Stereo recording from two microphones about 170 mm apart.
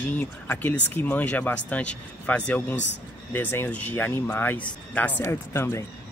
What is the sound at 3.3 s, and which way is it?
Speech, 10° left (ahead or behind).